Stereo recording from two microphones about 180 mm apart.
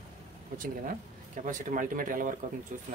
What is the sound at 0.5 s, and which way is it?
Speech, 50° right (ahead or behind).